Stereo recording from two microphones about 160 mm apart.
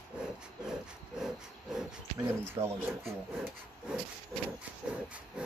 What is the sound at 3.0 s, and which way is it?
Speech, centre (ahead or behind).